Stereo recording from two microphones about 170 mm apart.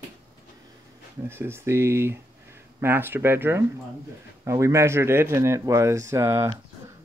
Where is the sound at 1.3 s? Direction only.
15° right (ahead or behind).